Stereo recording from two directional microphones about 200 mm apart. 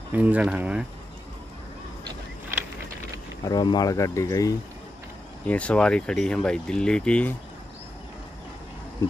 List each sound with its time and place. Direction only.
0.1 s speech: 5° right (ahead or behind)
3.4 s speech: 20° left (ahead or behind)
5.5 s speech: 5° left (ahead or behind)